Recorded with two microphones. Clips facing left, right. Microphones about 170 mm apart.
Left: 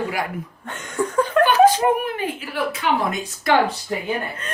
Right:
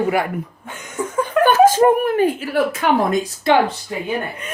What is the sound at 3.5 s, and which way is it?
Speech, 25° right (ahead or behind).